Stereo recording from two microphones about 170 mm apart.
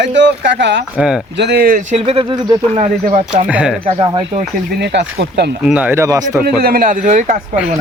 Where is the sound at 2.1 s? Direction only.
30° right (ahead or behind).